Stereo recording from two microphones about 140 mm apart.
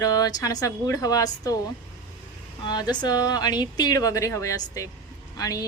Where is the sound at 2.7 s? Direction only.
30° left (ahead or behind).